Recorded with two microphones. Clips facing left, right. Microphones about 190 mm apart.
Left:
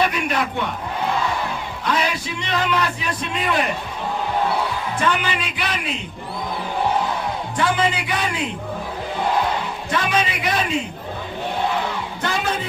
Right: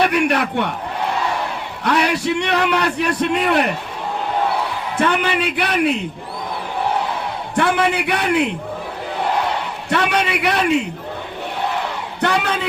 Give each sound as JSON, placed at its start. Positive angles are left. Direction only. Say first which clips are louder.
{"t": 0.0, "sound": "a man's voice", "louder": "right 4 dB", "side_deg": -70}
{"t": 1.8, "sound": "a man's voice", "louder": "right 5 dB", "side_deg": -70}
{"t": 4.9, "sound": "a man's voice", "louder": "right 6 dB", "side_deg": -60}
{"t": 7.5, "sound": "a man's voice", "louder": "right 4 dB", "side_deg": -60}
{"t": 9.9, "sound": "a man's voice", "louder": "right 3 dB", "side_deg": -70}
{"t": 12.2, "sound": "speech", "louder": "right 5 dB", "side_deg": -70}